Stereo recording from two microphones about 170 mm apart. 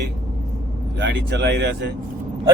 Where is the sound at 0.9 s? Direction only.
90° right.